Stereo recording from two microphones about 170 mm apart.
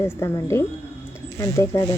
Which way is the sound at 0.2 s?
15° left (ahead or behind).